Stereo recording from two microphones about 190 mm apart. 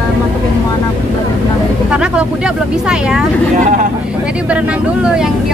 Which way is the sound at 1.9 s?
5° right (ahead or behind).